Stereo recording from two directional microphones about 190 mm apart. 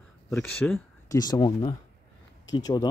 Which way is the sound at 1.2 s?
20° left (ahead or behind).